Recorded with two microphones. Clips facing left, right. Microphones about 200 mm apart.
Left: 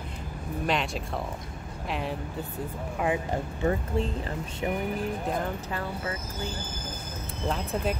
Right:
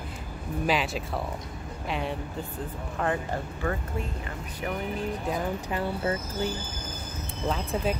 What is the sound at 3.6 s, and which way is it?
Speech, 30° left (ahead or behind).